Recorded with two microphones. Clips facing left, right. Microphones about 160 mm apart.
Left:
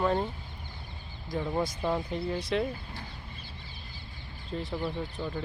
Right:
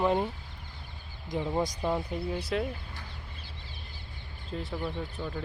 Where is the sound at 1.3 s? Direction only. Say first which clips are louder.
Right 1 dB; 15° right (ahead or behind).